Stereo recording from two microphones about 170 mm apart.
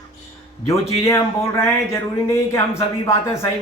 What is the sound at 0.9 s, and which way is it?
A man's voice, 15° left (ahead or behind).